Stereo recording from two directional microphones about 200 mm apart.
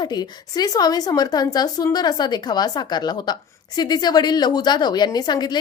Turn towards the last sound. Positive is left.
turn(degrees=20)  # may be behind; listen again after turning